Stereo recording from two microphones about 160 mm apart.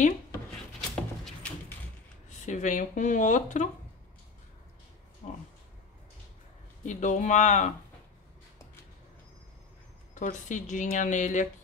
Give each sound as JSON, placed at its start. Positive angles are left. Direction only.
{"t": 0.7, "sound": "a sound", "side_deg": 0}
{"t": 2.2, "sound": "speech", "side_deg": 50}
{"t": 5.2, "sound": "speech", "side_deg": 45}
{"t": 6.8, "sound": "a woman's voice", "side_deg": 50}
{"t": 10.1, "sound": "a woman's voice", "side_deg": 50}